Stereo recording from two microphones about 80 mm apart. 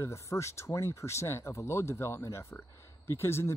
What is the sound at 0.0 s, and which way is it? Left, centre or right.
Speech, left.